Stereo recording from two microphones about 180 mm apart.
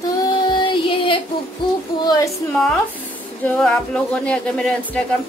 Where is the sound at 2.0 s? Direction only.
20° left (ahead or behind).